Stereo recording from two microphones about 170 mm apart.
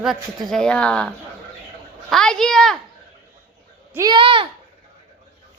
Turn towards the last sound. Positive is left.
turn(degrees=-30)  # may be behind; listen again after turning